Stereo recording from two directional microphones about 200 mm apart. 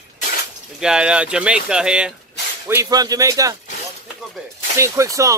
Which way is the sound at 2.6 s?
15° right (ahead or behind).